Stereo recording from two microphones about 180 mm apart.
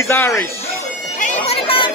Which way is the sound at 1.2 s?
35° left (ahead or behind).